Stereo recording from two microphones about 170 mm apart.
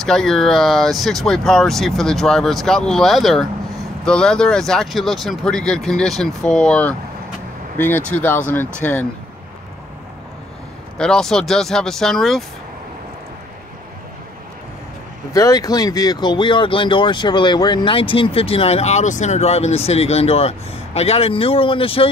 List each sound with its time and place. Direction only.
0.0 s speech: 5° left (ahead or behind)
11.0 s speech: 5° left (ahead or behind)
15.3 s speech: 20° left (ahead or behind)